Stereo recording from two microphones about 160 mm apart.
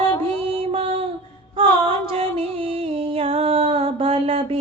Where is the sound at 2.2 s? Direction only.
35° right (ahead or behind).